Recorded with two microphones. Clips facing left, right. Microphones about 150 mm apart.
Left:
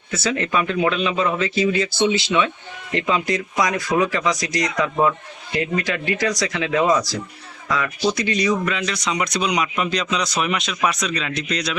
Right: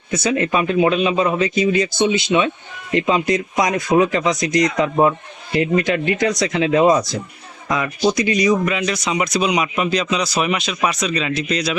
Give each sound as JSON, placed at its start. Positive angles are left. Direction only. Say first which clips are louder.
{"t": 0.1, "sound": "a man's voice", "louder": "right 4 dB", "side_deg": -15}